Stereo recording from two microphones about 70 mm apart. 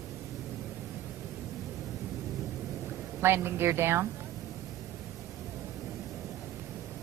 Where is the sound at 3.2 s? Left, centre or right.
Right.